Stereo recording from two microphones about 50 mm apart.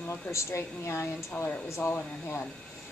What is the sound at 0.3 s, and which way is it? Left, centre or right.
Speech, left.